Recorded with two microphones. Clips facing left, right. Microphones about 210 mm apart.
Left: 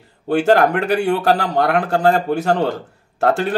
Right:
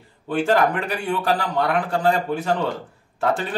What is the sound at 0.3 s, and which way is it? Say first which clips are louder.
Speech: left 5 dB; 75° left (ahead or behind).